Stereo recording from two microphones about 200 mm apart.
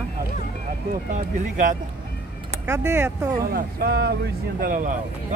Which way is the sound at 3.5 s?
50° right (ahead or behind).